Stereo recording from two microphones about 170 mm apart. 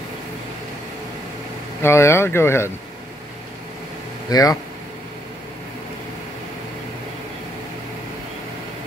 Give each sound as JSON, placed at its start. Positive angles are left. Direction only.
{"t": 1.8, "sound": "speech", "side_deg": 15}
{"t": 4.3, "sound": "speech", "side_deg": 20}